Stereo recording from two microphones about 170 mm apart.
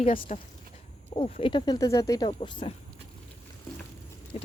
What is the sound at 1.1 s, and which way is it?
Speech, 35° left (ahead or behind).